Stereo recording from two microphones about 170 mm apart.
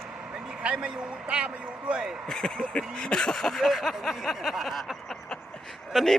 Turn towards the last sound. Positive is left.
turn(degrees=5)  # may be behind; listen again after turning